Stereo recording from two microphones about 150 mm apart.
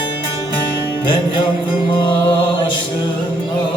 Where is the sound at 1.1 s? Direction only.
35° left (ahead or behind).